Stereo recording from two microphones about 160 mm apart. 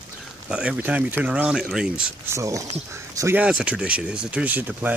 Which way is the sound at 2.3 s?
20° right (ahead or behind).